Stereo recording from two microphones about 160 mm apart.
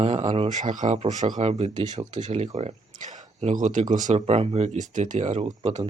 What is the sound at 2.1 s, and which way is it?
Speech, 45° right (ahead or behind).